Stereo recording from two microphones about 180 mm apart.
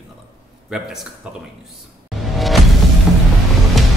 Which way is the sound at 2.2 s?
Centre (ahead or behind).